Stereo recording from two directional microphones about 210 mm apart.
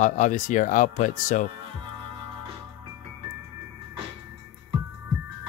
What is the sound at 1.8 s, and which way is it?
Music, 25° right (ahead or behind).